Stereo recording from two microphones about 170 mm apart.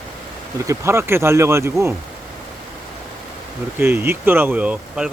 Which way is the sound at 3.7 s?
10° right (ahead or behind).